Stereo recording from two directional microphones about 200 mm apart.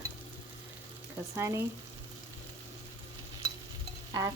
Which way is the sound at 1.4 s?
15° right (ahead or behind).